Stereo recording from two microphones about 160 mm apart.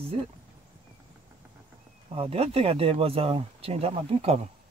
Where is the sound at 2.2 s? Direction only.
40° right (ahead or behind).